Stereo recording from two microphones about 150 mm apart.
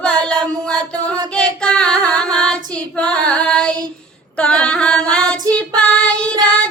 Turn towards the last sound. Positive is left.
turn(degrees=5)  # may be behind; listen again after turning